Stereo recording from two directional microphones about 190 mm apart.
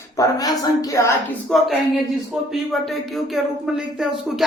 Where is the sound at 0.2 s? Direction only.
20° left (ahead or behind).